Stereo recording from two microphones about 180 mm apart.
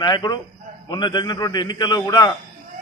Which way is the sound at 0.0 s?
25° left (ahead or behind).